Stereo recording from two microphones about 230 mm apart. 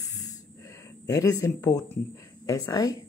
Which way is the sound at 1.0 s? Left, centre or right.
Centre.